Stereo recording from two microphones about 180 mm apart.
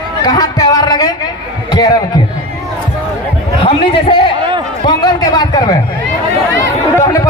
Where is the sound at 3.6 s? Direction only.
30° left (ahead or behind).